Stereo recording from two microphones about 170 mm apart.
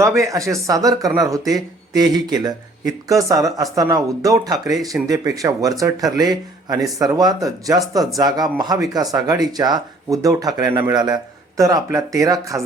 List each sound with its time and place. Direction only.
0.2 s speech: 20° right (ahead or behind)